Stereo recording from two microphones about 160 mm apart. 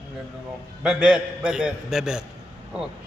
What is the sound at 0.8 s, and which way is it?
A man's voice, 5° right (ahead or behind).